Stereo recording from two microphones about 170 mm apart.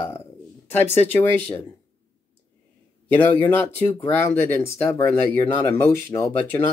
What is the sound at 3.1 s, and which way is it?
Speech, 10° left (ahead or behind).